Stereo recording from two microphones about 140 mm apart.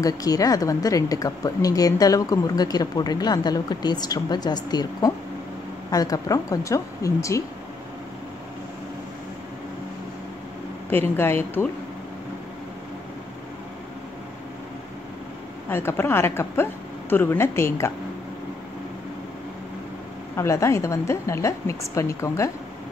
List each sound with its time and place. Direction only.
0.0 s speech: 25° left (ahead or behind)
10.9 s a woman's voice: 15° left (ahead or behind)
15.7 s a woman's voice: 15° left (ahead or behind)
20.3 s speech: 20° left (ahead or behind)